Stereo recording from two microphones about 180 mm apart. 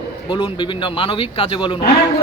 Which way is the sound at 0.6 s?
30° left (ahead or behind).